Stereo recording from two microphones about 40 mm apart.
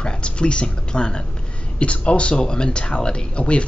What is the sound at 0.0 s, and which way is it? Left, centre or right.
Speech, left.